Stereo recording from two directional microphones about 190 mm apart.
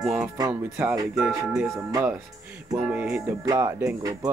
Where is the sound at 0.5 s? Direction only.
10° right (ahead or behind).